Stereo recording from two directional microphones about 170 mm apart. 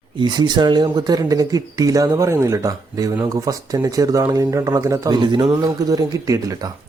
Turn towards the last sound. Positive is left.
turn(degrees=-20)  # may be behind; listen again after turning